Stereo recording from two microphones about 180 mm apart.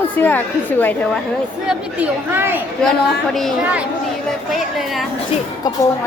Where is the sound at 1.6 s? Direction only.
10° right (ahead or behind).